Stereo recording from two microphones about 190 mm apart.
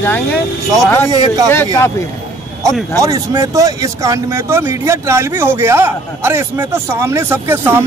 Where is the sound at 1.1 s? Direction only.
20° right (ahead or behind).